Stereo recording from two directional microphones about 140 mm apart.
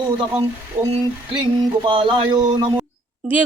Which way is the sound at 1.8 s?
35° right (ahead or behind).